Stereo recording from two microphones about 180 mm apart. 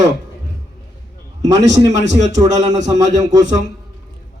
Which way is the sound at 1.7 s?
20° right (ahead or behind).